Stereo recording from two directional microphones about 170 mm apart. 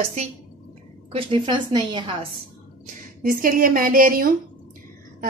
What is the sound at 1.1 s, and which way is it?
A woman's voice, 30° right (ahead or behind).